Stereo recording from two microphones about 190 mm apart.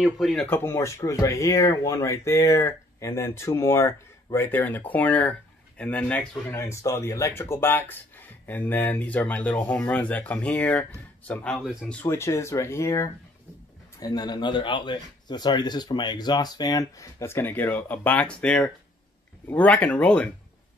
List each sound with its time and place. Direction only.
0.0 s speech: centre (ahead or behind)
0.5 s speech: 10° left (ahead or behind)